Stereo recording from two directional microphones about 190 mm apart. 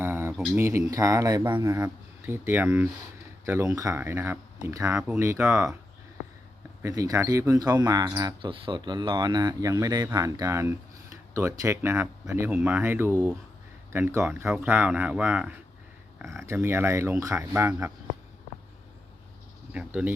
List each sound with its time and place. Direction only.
0.0 s speech: 10° right (ahead or behind)
6.8 s speech: 15° right (ahead or behind)
19.7 s speech: 5° right (ahead or behind)